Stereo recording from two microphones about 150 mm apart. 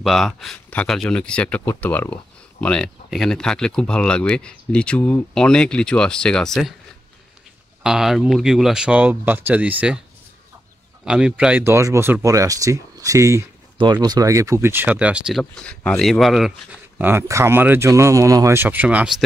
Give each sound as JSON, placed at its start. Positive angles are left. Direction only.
{"t": 0.0, "sound": "speech", "side_deg": 0}
{"t": 7.8, "sound": "speech", "side_deg": -5}
{"t": 11.1, "sound": "speech", "side_deg": -5}
{"t": 17.0, "sound": "speech", "side_deg": -15}